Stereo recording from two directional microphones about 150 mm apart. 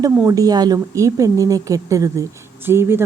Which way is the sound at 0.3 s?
25° right (ahead or behind).